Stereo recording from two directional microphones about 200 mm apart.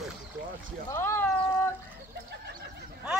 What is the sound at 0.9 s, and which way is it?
Cat, 15° left (ahead or behind).